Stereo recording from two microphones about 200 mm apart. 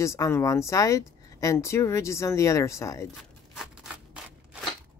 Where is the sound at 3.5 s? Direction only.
Centre (ahead or behind).